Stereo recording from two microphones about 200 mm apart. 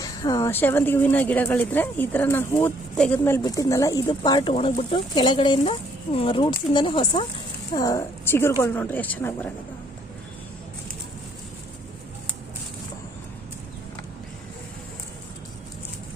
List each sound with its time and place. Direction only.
0.0 s speech: 20° left (ahead or behind)